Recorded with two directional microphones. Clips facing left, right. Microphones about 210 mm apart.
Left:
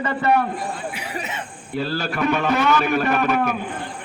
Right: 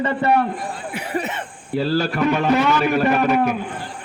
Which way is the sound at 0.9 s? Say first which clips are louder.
Right 5 dB; 55° right (ahead or behind).